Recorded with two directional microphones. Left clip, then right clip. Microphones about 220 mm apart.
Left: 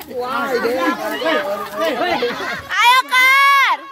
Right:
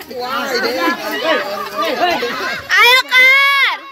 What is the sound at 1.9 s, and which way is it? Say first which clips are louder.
Speech: right 5 dB; 45° left (ahead or behind).